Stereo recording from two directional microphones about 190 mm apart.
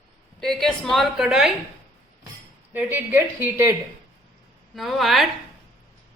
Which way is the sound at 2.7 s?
10° right (ahead or behind).